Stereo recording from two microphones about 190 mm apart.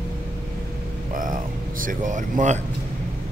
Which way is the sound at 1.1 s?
45° right (ahead or behind).